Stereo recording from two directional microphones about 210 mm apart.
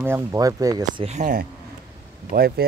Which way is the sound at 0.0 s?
10° right (ahead or behind).